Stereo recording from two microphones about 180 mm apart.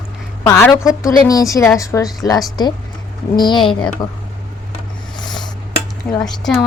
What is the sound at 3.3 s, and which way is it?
Speech, 25° left (ahead or behind).